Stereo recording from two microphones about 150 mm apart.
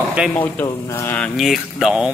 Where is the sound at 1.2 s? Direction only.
Centre (ahead or behind).